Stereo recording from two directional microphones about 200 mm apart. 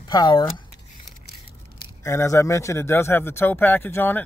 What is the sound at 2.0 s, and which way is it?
Speech, 15° left (ahead or behind).